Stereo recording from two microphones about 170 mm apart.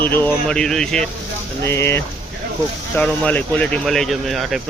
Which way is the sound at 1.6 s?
15° left (ahead or behind).